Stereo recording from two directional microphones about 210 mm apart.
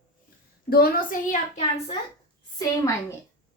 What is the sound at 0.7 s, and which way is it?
A woman's voice, 45° left (ahead or behind).